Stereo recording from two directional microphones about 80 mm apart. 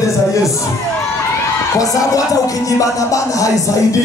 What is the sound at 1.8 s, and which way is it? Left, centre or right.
Music, left.